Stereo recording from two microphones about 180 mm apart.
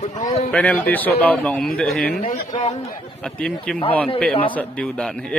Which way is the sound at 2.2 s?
40° left (ahead or behind).